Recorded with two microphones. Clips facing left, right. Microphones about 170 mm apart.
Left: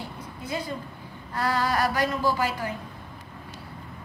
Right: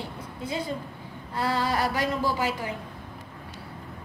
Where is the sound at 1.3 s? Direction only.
25° right (ahead or behind).